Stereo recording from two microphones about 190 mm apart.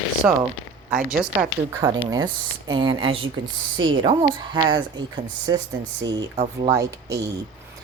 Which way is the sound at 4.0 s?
25° right (ahead or behind).